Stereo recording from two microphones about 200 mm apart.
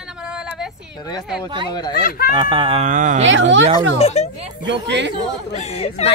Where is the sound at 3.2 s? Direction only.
65° right (ahead or behind).